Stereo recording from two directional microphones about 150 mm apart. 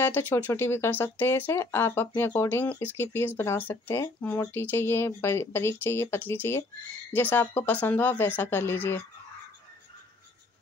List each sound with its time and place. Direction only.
0.0 s speech: 15° left (ahead or behind)